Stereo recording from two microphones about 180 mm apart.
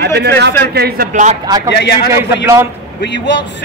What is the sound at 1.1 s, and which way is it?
Speech, 45° right (ahead or behind).